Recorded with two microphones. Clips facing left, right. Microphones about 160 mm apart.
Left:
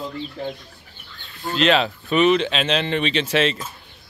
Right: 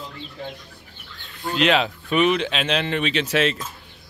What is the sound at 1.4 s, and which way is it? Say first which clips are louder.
Speech: left 1 dB; 15° right (ahead or behind).